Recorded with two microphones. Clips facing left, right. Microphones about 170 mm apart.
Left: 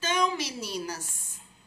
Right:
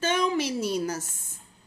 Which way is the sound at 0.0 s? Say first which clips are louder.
Right 3 dB; 55° right (ahead or behind).